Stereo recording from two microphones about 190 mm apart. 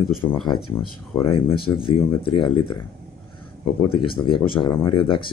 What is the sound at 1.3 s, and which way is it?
Speech, 25° left (ahead or behind).